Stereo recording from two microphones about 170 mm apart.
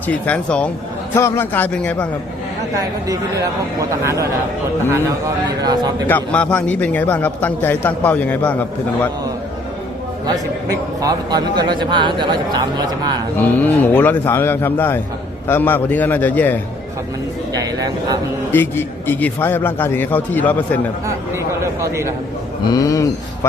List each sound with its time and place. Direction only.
0.1 s a man's voice: 10° left (ahead or behind)
3.1 s a man's voice: 20° right (ahead or behind)
6.1 s a man's voice: 10° left (ahead or behind)
11.0 s a man's voice: 25° right (ahead or behind)
13.3 s a man's voice: 10° left (ahead or behind)
17.5 s speech: 20° right (ahead or behind)
18.5 s a man's voice: 10° left (ahead or behind)
21.1 s speech: 15° right (ahead or behind)
22.6 s speech: 20° left (ahead or behind)